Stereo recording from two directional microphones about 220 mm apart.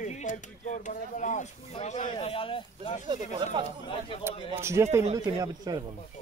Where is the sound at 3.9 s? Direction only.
25° left (ahead or behind).